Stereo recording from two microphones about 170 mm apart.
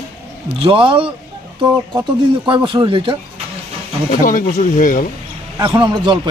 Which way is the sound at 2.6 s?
30° right (ahead or behind).